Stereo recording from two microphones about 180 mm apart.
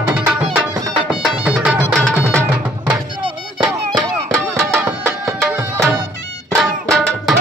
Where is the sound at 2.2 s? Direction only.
15° right (ahead or behind).